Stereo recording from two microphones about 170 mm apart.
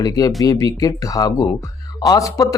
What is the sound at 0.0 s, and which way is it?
Speech, 20° left (ahead or behind).